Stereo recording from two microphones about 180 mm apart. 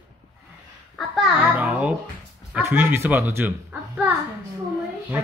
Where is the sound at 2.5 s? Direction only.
10° right (ahead or behind).